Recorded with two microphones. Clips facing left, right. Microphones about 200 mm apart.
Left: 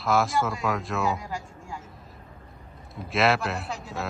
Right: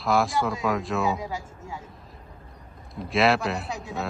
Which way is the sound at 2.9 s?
Centre (ahead or behind).